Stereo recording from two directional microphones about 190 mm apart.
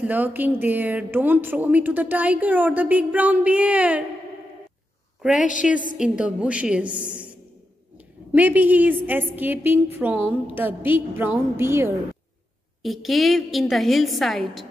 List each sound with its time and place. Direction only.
0.0 s a woman's voice: 10° right (ahead or behind)
5.4 s a woman's voice: 40° left (ahead or behind)
5.9 s a woman's voice: 5° right (ahead or behind)
8.3 s a woman's voice: 10° right (ahead or behind)
12.8 s a woman's voice: centre (ahead or behind)